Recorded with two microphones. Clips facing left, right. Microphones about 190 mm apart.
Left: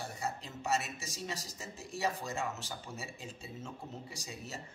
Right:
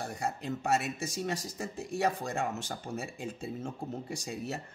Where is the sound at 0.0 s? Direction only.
55° right (ahead or behind).